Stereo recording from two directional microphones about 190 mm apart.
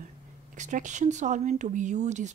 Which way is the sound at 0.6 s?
40° right (ahead or behind).